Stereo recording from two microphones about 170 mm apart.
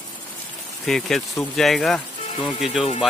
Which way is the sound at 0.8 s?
Centre (ahead or behind).